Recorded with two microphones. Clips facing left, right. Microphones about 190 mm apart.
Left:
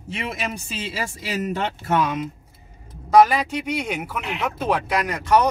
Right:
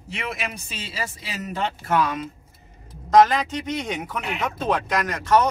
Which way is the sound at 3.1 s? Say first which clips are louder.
Left 1 dB; 10° left (ahead or behind).